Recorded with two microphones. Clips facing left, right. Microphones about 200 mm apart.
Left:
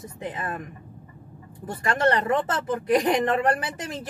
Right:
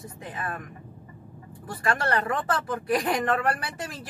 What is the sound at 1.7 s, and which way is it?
Speech, 25° left (ahead or behind).